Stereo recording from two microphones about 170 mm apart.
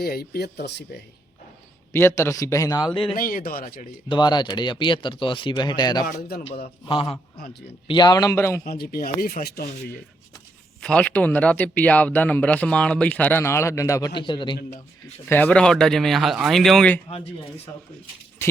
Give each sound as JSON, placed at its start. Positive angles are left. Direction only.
{"t": 0.0, "sound": "speech", "side_deg": 65}
{"t": 1.9, "sound": "speech", "side_deg": 15}
{"t": 3.2, "sound": "speech", "side_deg": 55}
{"t": 4.1, "sound": "speech", "side_deg": 25}
{"t": 6.1, "sound": "speech", "side_deg": 65}
{"t": 6.8, "sound": "speech", "side_deg": 30}
{"t": 8.6, "sound": "speech", "side_deg": 65}
{"t": 10.8, "sound": "speech", "side_deg": 5}
{"t": 14.2, "sound": "speech", "side_deg": 30}
{"t": 15.3, "sound": "speech", "side_deg": 10}